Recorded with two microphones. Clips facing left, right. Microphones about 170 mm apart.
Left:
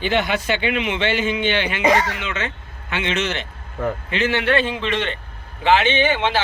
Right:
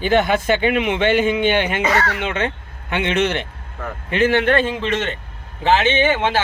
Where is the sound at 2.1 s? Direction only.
55° right (ahead or behind).